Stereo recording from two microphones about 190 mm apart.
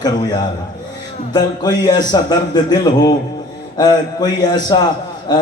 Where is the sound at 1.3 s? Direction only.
20° left (ahead or behind).